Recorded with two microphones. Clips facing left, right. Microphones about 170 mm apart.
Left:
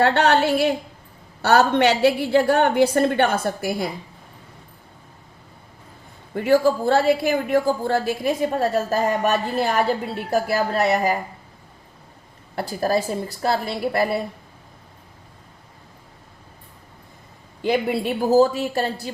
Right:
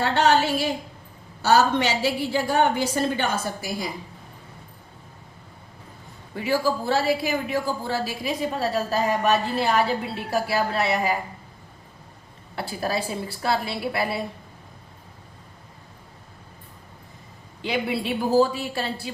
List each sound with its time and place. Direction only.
0.0 s a woman's voice: 60° left (ahead or behind)
6.3 s a woman's voice: 50° left (ahead or behind)
12.5 s a woman's voice: 45° left (ahead or behind)
17.6 s a woman's voice: 45° left (ahead or behind)